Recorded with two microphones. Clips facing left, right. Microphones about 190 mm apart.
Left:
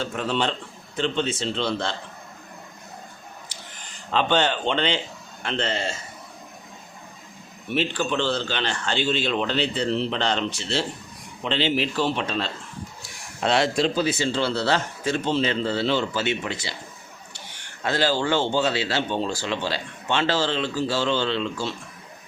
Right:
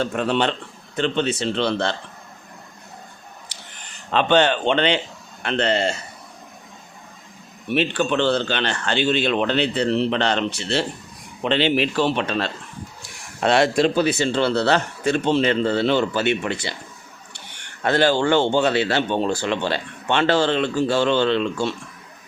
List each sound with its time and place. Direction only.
0.0 s speech: 60° right (ahead or behind)
3.5 s a sound: 65° right (ahead or behind)
4.1 s speech: 60° right (ahead or behind)
7.7 s speech: 60° right (ahead or behind)
17.8 s speech: 60° right (ahead or behind)